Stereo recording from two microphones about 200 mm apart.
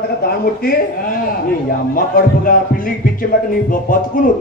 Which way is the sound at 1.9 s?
45° left (ahead or behind).